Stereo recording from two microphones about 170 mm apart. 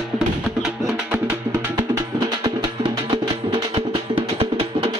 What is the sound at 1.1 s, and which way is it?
Music, 15° right (ahead or behind).